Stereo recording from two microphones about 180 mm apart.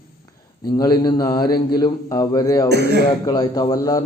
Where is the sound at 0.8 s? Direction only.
25° left (ahead or behind).